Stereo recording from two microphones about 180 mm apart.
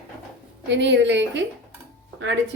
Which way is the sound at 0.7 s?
80° right.